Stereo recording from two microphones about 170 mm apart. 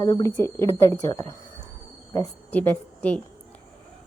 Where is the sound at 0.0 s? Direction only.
20° left (ahead or behind).